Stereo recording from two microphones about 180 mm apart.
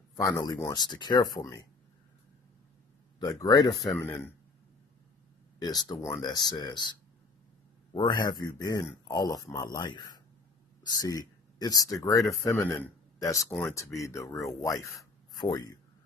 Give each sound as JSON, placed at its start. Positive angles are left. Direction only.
{"t": 0.2, "sound": "a man's voice", "side_deg": 20}
{"t": 3.2, "sound": "a man's voice", "side_deg": 25}
{"t": 3.7, "sound": "speech", "side_deg": 0}
{"t": 5.6, "sound": "a man's voice", "side_deg": 20}